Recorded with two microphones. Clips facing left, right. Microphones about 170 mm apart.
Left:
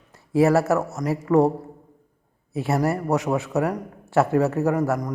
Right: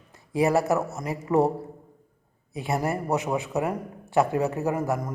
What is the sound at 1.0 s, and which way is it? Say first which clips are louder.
Speech: left 6 dB; 20° right (ahead or behind).